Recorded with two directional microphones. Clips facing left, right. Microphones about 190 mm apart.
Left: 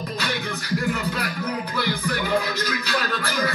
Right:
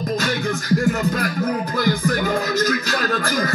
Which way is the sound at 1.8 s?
45° right (ahead or behind).